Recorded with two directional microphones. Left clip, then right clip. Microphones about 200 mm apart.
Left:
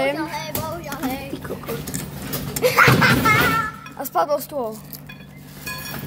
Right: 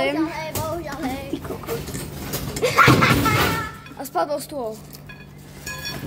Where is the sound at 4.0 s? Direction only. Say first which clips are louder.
Left 3 dB; 10° left (ahead or behind).